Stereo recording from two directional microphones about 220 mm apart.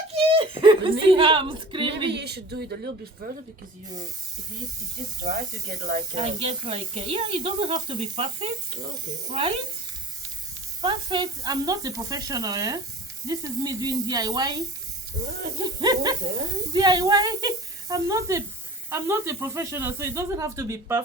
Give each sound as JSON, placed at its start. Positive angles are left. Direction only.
{"t": 0.3, "sound": "a woman's voice", "side_deg": -20}
{"t": 2.1, "sound": "speech", "side_deg": -50}
{"t": 5.2, "sound": "speech", "side_deg": -30}
{"t": 10.8, "sound": "speech", "side_deg": -20}
{"t": 15.2, "sound": "speech", "side_deg": -30}
{"t": 15.6, "sound": "speech", "side_deg": -15}